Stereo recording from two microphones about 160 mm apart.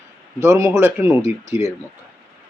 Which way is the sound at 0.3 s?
20° right (ahead or behind).